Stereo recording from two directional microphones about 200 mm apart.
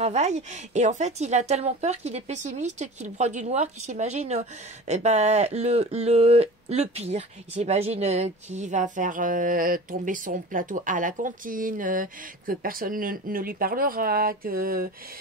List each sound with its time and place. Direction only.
0.0 s a woman's voice: 35° right (ahead or behind)